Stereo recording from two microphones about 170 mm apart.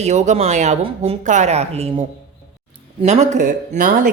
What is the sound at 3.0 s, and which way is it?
Speech, 45° right (ahead or behind).